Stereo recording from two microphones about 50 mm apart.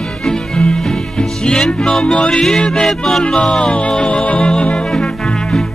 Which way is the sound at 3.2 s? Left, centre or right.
Centre.